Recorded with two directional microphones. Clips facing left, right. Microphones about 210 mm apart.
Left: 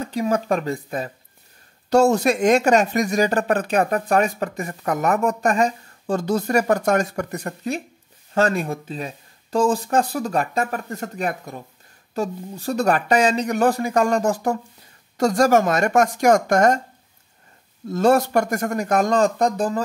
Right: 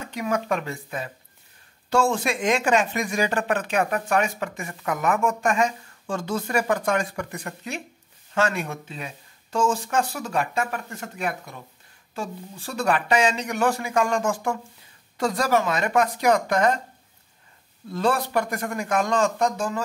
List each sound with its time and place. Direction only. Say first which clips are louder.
0.0 s a woman's voice: left 5 dB; 35° left (ahead or behind)
17.8 s a woman's voice: left 7 dB; 45° left (ahead or behind)